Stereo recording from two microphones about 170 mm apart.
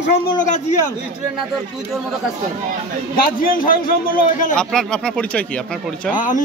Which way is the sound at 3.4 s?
55° left (ahead or behind).